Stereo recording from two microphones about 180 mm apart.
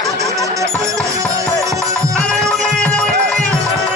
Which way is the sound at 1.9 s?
5° left (ahead or behind).